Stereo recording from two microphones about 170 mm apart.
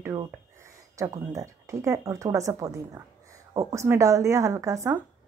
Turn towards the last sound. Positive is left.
turn(degrees=-20)  # may be behind; listen again after turning